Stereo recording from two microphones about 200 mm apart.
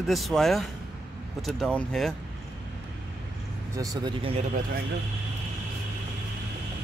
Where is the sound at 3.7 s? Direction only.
25° right (ahead or behind).